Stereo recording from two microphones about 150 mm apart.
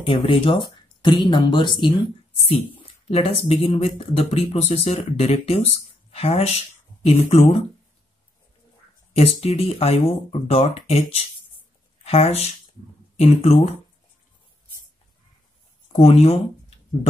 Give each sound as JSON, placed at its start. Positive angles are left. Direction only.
{"t": 0.0, "sound": "speech", "side_deg": 35}
{"t": 3.1, "sound": "speech", "side_deg": 45}
{"t": 9.1, "sound": "speech", "side_deg": 45}
{"t": 16.0, "sound": "speech", "side_deg": 45}